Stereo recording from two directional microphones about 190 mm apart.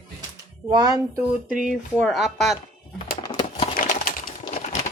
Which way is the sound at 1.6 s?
Centre (ahead or behind).